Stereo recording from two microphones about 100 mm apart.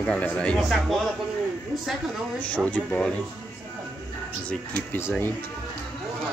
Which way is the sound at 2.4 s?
15° left (ahead or behind).